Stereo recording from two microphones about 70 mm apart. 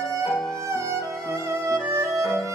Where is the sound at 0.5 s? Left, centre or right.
Right.